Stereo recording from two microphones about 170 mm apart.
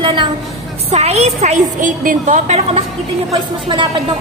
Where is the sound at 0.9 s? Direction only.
40° right (ahead or behind).